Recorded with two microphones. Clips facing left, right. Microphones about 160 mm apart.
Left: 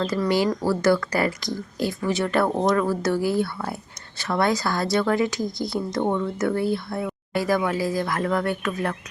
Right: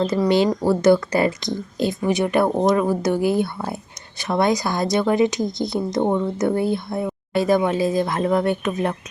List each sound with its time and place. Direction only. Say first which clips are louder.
0.0 s speech: right 4 dB; 20° right (ahead or behind)